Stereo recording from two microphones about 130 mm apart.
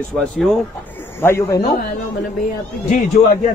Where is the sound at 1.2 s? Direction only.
20° left (ahead or behind).